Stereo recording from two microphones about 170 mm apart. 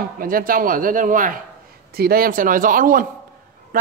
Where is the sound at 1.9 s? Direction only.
65° right (ahead or behind).